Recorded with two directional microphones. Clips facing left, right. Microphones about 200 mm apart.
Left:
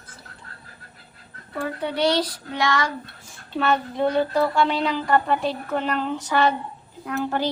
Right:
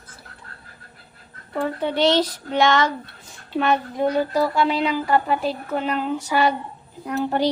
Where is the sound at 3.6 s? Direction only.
10° right (ahead or behind).